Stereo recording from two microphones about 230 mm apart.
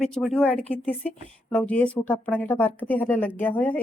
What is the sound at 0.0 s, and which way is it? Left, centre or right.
A woman's voice, centre.